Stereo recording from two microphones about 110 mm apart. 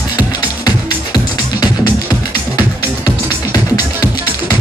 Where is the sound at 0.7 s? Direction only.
35° left (ahead or behind).